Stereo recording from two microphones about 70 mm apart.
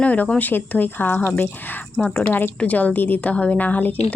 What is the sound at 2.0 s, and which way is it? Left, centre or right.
A woman's voice, centre.